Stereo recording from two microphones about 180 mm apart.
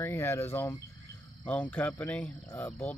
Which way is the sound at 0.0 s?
15° left (ahead or behind).